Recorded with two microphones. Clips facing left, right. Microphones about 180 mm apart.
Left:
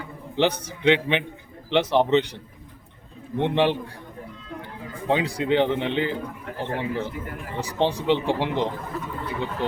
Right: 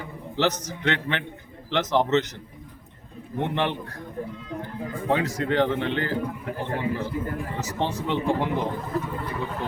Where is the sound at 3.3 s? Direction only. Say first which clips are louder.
Left 4 dB; 20° left (ahead or behind).